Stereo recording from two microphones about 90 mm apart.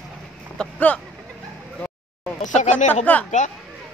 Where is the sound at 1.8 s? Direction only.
15° left (ahead or behind).